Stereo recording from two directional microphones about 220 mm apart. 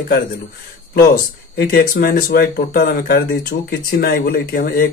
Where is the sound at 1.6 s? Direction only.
45° left (ahead or behind).